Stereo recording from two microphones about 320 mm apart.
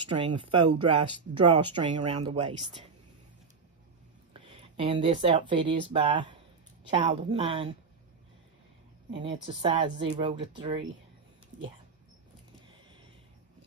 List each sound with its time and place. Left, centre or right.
0.0 s speech: centre
4.3 s speech: centre
9.1 s speech: centre